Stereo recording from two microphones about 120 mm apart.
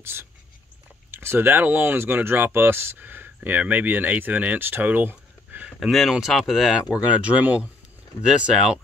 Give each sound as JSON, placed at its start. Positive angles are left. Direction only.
{"t": 0.0, "sound": "speech", "side_deg": -20}
{"t": 5.8, "sound": "speech", "side_deg": 0}